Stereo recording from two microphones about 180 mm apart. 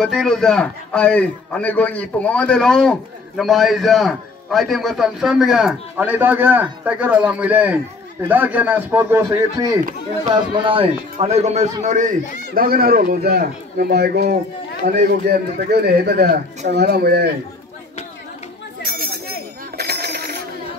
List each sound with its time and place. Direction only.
0.0 s a man's voice: centre (ahead or behind); by 12.1 s 45° right (ahead or behind)
12.5 s a man's voice: 55° right (ahead or behind)
18.9 s a sound: 55° right (ahead or behind)
19.8 s coin: 60° right (ahead or behind)